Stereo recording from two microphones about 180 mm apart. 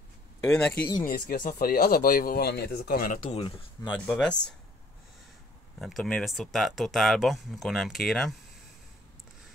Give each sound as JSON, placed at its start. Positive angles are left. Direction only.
{"t": 0.5, "sound": "speech", "side_deg": 5}
{"t": 1.0, "sound": "speech", "side_deg": 50}
{"t": 3.3, "sound": "speech", "side_deg": 30}
{"t": 4.0, "sound": "speech", "side_deg": 5}
{"t": 5.8, "sound": "speech", "side_deg": 0}